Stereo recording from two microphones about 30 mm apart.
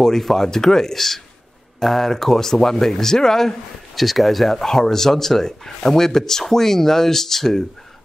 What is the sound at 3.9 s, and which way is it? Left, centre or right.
A man's voice, centre.